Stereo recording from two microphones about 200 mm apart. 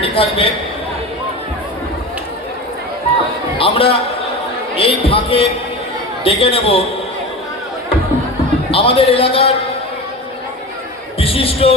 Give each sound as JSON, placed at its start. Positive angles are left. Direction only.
{"t": 0.0, "sound": "speech", "side_deg": 25}
{"t": 3.6, "sound": "speech", "side_deg": 25}
{"t": 8.7, "sound": "speech", "side_deg": 25}
{"t": 11.2, "sound": "speech", "side_deg": 30}